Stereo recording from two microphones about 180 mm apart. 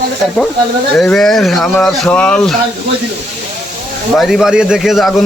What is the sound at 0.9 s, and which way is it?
Speech, centre (ahead or behind).